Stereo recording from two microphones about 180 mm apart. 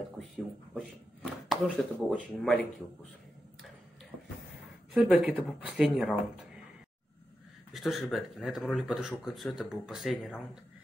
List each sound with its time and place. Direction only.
0.7 s speech: centre (ahead or behind)
4.9 s speech: 5° right (ahead or behind)
7.7 s speech: centre (ahead or behind)